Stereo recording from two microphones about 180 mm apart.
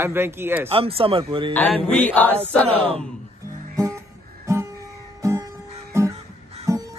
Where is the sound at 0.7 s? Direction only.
30° right (ahead or behind).